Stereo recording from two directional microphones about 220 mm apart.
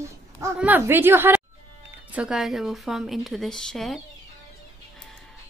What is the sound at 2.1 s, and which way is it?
Speech, 5° right (ahead or behind).